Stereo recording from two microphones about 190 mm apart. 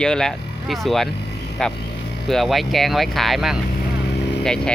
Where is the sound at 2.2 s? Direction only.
Centre (ahead or behind).